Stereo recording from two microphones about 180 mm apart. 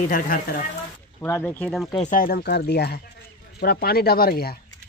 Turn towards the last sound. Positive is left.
turn(degrees=60)  # may be behind; listen again after turning